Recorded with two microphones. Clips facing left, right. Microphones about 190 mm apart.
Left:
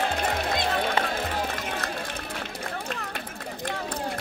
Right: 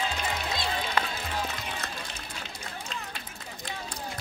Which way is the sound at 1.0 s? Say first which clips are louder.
Left 5 dB; 55° left (ahead or behind).